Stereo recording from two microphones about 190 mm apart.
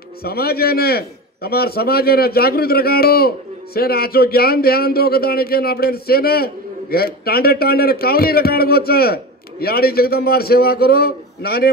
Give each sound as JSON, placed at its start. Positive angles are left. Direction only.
{"t": 0.2, "sound": "a man's voice", "side_deg": 55}